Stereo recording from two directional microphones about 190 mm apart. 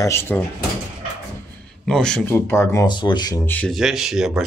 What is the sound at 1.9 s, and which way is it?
Speech, 5° left (ahead or behind).